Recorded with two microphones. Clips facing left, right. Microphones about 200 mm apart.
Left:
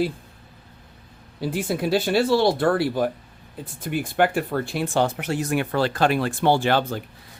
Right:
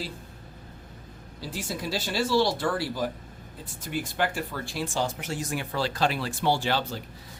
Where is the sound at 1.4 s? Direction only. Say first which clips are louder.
Left 9 dB; 60° left (ahead or behind).